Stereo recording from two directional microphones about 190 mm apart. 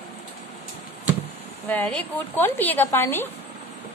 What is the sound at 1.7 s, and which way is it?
A woman's voice, 5° left (ahead or behind).